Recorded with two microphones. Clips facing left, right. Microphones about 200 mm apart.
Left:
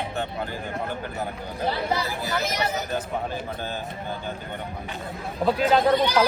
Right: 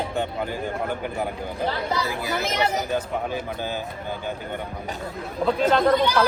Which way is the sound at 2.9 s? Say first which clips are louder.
Right 2 dB; 10° right (ahead or behind).